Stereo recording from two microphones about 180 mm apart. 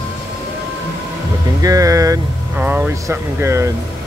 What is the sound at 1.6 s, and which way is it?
Speech, 20° right (ahead or behind).